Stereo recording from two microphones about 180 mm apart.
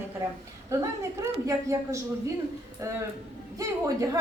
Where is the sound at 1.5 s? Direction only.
15° right (ahead or behind).